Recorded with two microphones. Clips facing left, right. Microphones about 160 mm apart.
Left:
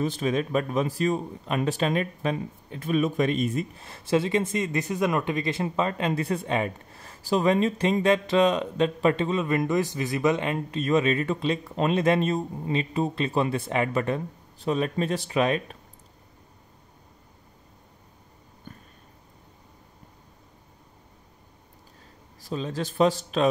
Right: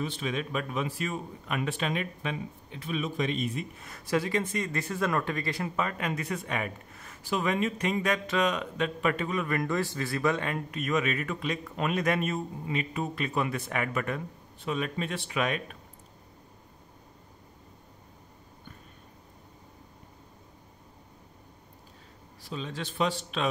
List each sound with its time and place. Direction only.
0.0 s speech: 40° left (ahead or behind)
3.7 s speech: 30° left (ahead or behind)
22.4 s speech: 40° left (ahead or behind)